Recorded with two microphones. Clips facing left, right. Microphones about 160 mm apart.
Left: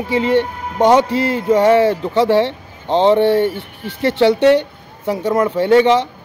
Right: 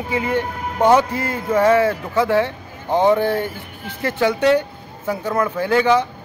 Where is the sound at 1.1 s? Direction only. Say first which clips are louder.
Left 7 dB; 75° left (ahead or behind).